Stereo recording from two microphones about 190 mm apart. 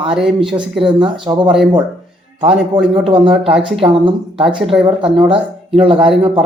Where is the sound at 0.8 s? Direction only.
25° right (ahead or behind).